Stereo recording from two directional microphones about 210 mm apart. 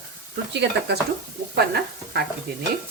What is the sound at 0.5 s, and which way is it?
Speech, 55° right (ahead or behind).